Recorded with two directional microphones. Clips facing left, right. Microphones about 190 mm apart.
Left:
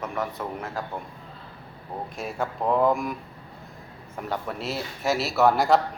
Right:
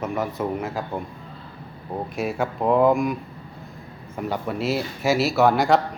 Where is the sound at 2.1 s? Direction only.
5° right (ahead or behind).